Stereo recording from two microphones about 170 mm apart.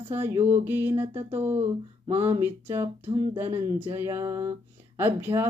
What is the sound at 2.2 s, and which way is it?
Speech, 15° right (ahead or behind).